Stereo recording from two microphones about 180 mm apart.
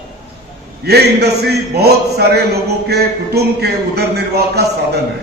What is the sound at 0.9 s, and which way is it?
A man's voice, 65° right (ahead or behind).